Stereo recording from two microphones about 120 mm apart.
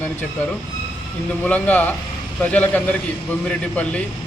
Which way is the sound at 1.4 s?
10° left (ahead or behind).